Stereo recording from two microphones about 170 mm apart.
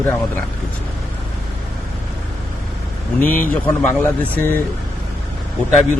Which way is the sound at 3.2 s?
55° left (ahead or behind).